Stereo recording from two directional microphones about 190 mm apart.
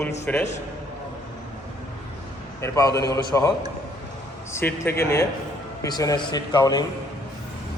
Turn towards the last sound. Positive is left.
turn(degrees=20)  # may be behind; listen again after turning